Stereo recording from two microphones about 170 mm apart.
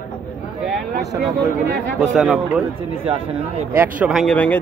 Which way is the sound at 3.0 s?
35° right (ahead or behind).